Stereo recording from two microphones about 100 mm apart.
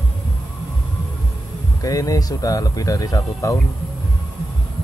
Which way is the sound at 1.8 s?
35° left (ahead or behind).